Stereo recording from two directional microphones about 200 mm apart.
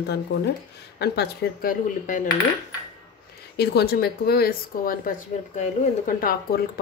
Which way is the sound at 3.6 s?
50° left (ahead or behind).